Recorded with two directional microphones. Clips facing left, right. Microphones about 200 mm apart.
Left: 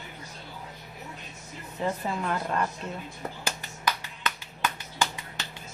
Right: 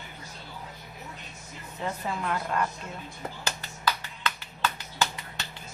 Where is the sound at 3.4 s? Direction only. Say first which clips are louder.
Right 1 dB; 15° left (ahead or behind).